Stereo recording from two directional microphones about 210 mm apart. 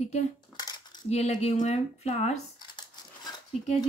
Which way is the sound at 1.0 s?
30° left (ahead or behind).